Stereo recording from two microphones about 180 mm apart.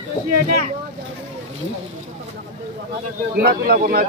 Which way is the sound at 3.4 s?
55° right (ahead or behind).